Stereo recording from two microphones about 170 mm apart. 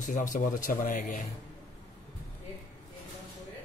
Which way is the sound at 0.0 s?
50° left (ahead or behind).